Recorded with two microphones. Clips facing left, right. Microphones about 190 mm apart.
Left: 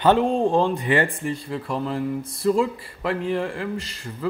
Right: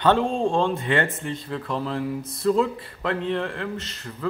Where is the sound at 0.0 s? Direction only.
15° left (ahead or behind).